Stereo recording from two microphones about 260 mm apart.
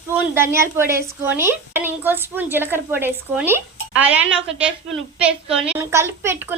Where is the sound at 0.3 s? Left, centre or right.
Centre.